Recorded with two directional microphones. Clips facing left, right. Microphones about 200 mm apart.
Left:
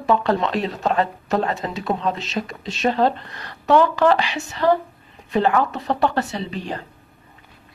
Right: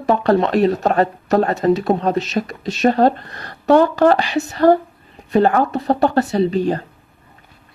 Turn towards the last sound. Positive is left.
turn(degrees=-40)  # may be behind; listen again after turning